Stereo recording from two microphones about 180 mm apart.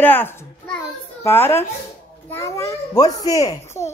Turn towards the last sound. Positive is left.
turn(degrees=20)  # may be behind; listen again after turning